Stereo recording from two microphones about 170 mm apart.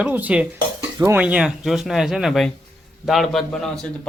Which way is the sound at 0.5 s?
20° right (ahead or behind).